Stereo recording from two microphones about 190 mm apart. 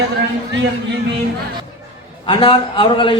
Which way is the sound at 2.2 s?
25° left (ahead or behind).